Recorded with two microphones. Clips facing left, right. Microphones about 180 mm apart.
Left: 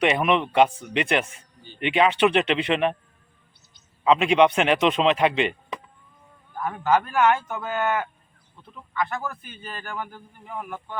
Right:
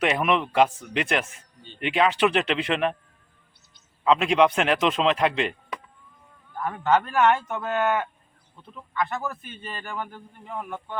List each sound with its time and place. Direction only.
0.0 s a man's voice: centre (ahead or behind)
4.0 s a man's voice: centre (ahead or behind)
6.6 s a man's voice: 5° left (ahead or behind)